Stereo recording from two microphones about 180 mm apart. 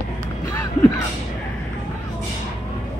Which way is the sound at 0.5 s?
15° left (ahead or behind).